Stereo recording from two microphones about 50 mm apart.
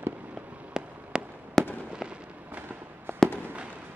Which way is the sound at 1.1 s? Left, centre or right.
Centre.